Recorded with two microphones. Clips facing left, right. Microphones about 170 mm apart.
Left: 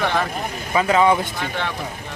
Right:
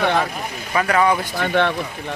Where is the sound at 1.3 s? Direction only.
60° right (ahead or behind).